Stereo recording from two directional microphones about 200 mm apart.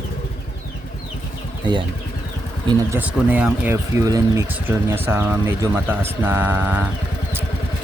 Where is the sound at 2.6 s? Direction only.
10° right (ahead or behind).